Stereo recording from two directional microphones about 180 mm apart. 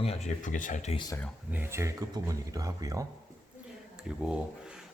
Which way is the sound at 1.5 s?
15° right (ahead or behind).